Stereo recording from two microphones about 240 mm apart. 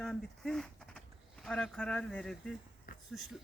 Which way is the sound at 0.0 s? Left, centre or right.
Centre.